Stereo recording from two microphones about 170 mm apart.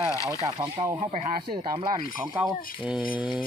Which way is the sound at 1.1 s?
45° right (ahead or behind).